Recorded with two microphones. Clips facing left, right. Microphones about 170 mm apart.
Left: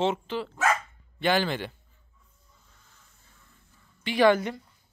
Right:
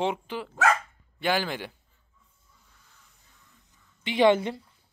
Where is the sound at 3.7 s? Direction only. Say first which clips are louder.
Left 1 dB; 20° right (ahead or behind).